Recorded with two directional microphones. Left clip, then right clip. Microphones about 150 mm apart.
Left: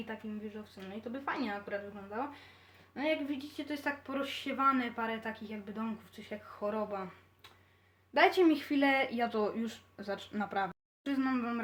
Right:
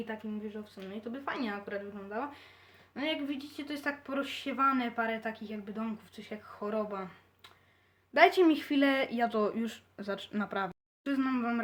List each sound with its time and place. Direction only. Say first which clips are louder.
1.1 s speech: even; 55° right (ahead or behind)
2.9 s speech: left 1 dB; 40° right (ahead or behind)
8.1 s speech: right 3 dB; 40° right (ahead or behind)